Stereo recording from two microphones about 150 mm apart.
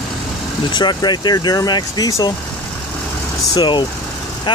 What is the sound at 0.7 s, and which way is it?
Speech, 30° left (ahead or behind).